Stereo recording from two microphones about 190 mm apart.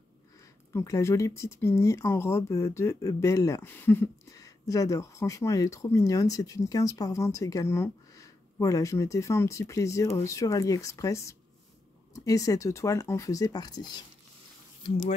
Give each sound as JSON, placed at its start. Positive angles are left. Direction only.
{"t": 0.7, "sound": "speech", "side_deg": 15}
{"t": 14.8, "sound": "speech", "side_deg": 30}